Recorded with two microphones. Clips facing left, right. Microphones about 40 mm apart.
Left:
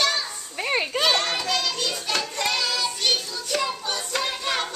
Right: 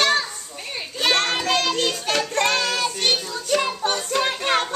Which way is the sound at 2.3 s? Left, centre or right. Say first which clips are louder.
Right 6 dB; right.